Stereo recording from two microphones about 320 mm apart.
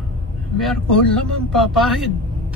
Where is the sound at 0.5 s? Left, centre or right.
Centre.